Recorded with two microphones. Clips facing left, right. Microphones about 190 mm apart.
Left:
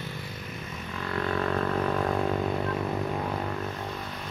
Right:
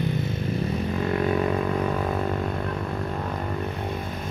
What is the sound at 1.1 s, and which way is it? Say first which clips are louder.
Music: right 4 dB; 20° right (ahead or behind).